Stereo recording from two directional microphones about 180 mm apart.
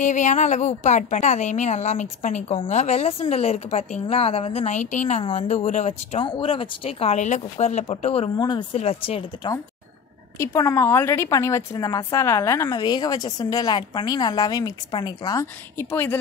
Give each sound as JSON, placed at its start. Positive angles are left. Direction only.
{"t": 0.0, "sound": "speech", "side_deg": 45}
{"t": 5.2, "sound": "speech", "side_deg": 30}
{"t": 8.4, "sound": "a woman's voice", "side_deg": 25}
{"t": 8.7, "sound": "speech", "side_deg": 35}
{"t": 10.4, "sound": "a woman's voice", "side_deg": 15}